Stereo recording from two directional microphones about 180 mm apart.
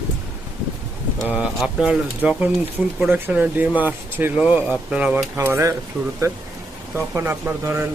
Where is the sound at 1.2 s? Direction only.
5° right (ahead or behind).